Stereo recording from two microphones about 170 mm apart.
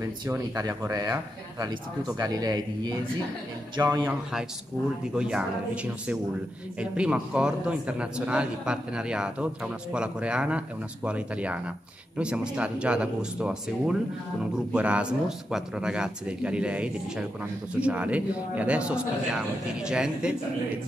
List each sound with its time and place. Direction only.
0.0 s speech: 20° right (ahead or behind)
4.0 s speech: 5° right (ahead or behind)